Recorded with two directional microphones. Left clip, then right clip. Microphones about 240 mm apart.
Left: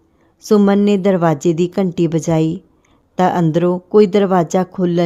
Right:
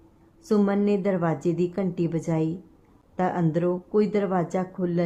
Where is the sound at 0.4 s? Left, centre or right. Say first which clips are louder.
Left 10 dB; left.